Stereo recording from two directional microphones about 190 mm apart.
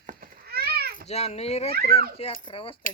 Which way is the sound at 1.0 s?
35° left (ahead or behind).